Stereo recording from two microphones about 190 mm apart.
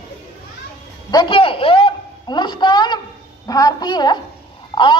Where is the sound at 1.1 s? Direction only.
25° left (ahead or behind).